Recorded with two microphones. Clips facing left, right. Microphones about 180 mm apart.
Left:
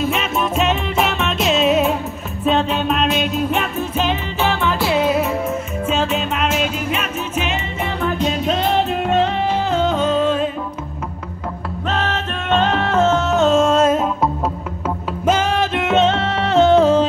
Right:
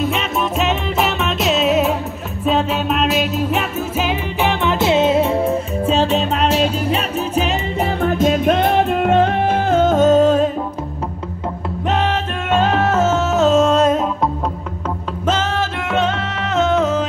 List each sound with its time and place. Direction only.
0.0 s music: centre (ahead or behind); by 10.5 s 40° right (ahead or behind)
11.9 s music: 15° right (ahead or behind); by 14.3 s centre (ahead or behind)
15.2 s music: 10° left (ahead or behind); by 17.0 s 30° left (ahead or behind)